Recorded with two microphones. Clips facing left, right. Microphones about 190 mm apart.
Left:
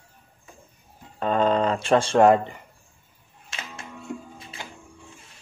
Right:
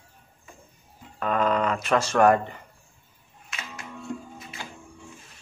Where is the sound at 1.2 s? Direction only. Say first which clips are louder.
Left 3 dB; 30° left (ahead or behind).